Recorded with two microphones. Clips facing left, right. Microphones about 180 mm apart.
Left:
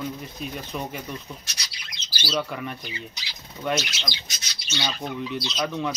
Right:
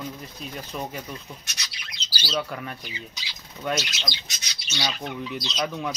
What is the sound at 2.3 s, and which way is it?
Speech, centre (ahead or behind).